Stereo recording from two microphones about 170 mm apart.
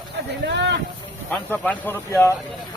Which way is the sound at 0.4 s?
90° right.